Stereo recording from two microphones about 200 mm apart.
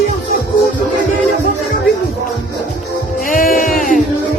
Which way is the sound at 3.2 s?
45° left (ahead or behind).